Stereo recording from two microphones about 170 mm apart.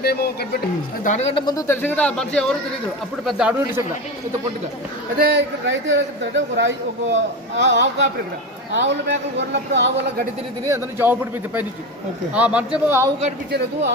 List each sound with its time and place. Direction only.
0.0 s a man's voice: 65° left (ahead or behind)
1.0 s a man's voice: 40° left (ahead or behind); by 3.8 s 5° right (ahead or behind)
5.1 s a man's voice: 70° right (ahead or behind); by 10.2 s 90° right
10.7 s a man's voice: 15° right (ahead or behind)